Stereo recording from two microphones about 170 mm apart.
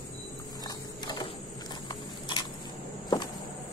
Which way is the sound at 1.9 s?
25° left (ahead or behind).